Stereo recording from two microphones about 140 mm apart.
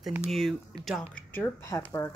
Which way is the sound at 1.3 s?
20° left (ahead or behind).